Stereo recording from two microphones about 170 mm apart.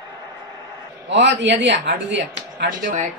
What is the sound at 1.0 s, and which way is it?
Speech, 90° right.